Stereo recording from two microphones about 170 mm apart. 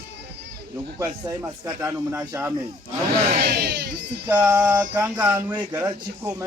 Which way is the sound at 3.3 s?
70° right (ahead or behind).